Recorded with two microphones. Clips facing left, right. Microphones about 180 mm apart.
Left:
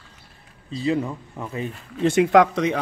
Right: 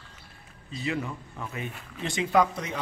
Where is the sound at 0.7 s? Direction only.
30° left (ahead or behind).